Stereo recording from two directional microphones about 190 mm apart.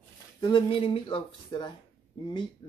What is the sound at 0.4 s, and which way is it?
Speech, 25° left (ahead or behind).